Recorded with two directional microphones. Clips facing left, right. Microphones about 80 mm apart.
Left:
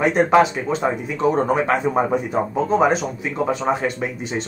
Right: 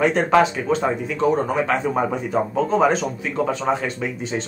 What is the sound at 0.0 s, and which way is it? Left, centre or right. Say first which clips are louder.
Speech: left 1 dB; centre.